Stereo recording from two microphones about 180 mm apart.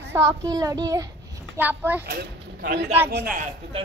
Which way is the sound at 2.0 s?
60° right (ahead or behind).